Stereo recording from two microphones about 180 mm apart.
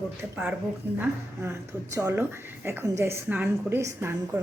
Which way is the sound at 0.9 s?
15° right (ahead or behind).